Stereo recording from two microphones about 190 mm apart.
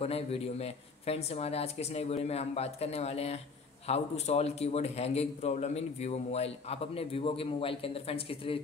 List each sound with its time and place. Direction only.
0.0 s a man's voice: 30° left (ahead or behind)